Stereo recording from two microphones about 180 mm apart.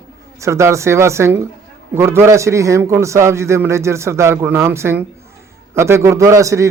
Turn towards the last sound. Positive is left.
turn(degrees=-15)  # may be behind; listen again after turning